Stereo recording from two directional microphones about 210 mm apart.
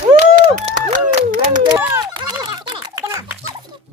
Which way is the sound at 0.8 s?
40° right (ahead or behind).